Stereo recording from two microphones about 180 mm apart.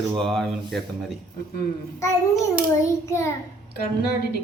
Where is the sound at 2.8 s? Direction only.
15° left (ahead or behind).